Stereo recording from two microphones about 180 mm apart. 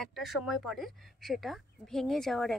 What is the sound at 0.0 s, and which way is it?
Speech, centre (ahead or behind).